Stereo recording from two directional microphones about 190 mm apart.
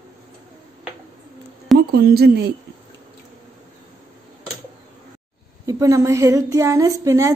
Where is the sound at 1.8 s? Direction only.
55° right (ahead or behind).